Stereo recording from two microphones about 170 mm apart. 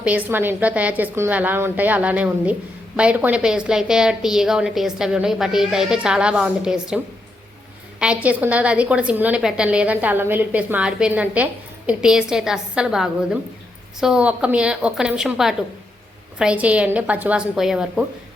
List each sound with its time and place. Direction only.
0.0 s a woman's voice: 10° right (ahead or behind)